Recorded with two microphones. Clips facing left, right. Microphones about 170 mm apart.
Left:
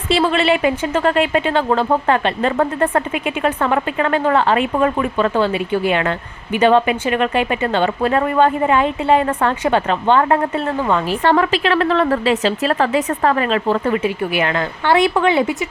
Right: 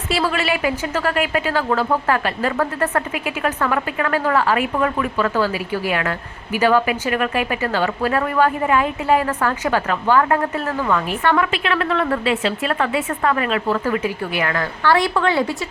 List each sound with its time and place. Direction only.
0.1 s a woman's voice: 25° left (ahead or behind)